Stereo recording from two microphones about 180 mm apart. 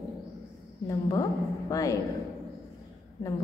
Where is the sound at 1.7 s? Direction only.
20° left (ahead or behind).